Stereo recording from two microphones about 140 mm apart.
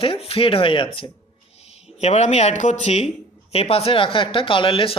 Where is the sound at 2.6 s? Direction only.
55° left (ahead or behind); by 5.0 s 40° left (ahead or behind).